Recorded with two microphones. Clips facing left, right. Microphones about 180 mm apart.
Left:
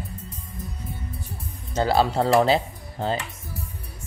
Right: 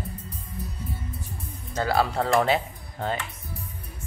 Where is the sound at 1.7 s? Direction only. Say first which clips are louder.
Left 3 dB; 25° left (ahead or behind).